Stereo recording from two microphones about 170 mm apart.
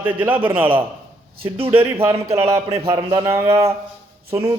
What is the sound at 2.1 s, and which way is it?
Speech, 35° right (ahead or behind).